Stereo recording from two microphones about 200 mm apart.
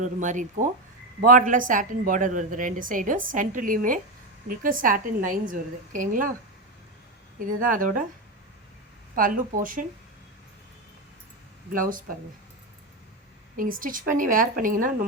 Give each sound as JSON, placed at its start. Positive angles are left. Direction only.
{"t": 0.0, "sound": "a woman's voice", "side_deg": -40}
{"t": 7.3, "sound": "a woman's voice", "side_deg": -45}
{"t": 9.1, "sound": "a woman's voice", "side_deg": -45}
{"t": 11.7, "sound": "a woman's voice", "side_deg": -45}
{"t": 13.6, "sound": "a woman's voice", "side_deg": -45}